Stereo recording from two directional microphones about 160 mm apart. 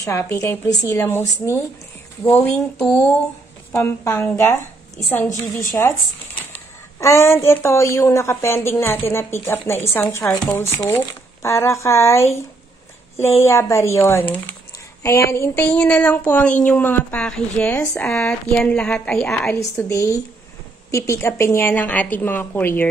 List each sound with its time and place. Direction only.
0.0 s speech: 20° left (ahead or behind)
7.0 s speech: 15° left (ahead or behind)
15.3 s speech: 15° left (ahead or behind)
19.5 s a woman's voice: 20° left (ahead or behind)